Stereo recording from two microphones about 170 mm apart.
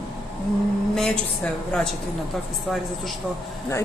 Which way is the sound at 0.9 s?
5° left (ahead or behind).